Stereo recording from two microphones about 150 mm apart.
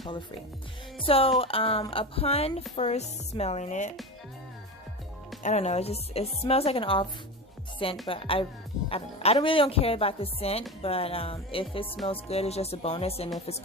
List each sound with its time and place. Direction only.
0.0 s speech: 30° left (ahead or behind); by 3.9 s 55° left (ahead or behind)
5.4 s speech: 50° left (ahead or behind)